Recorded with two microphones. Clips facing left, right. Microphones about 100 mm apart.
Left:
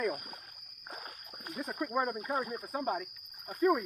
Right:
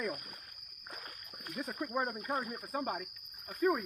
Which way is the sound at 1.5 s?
30° left (ahead or behind).